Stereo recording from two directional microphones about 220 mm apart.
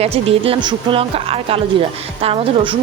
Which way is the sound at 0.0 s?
25° right (ahead or behind).